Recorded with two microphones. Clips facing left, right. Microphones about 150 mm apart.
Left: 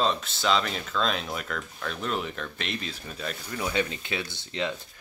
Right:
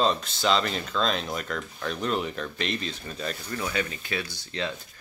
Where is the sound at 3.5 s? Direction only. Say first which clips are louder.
Left 3 dB; 20° left (ahead or behind).